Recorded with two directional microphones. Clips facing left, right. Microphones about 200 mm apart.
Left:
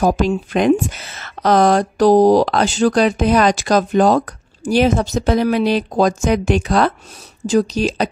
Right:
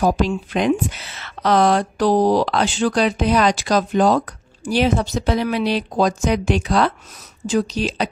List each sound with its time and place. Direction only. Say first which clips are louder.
0.0 s speech: left 2 dB; 45° left (ahead or behind)